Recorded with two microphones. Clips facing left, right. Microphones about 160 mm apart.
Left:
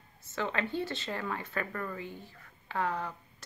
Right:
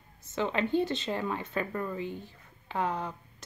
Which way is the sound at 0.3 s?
20° right (ahead or behind).